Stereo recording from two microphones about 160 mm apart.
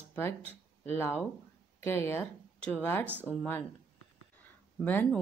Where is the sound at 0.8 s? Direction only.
15° left (ahead or behind).